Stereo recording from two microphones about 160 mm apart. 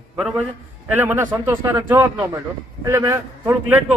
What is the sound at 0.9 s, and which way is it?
Speech, 10° right (ahead or behind).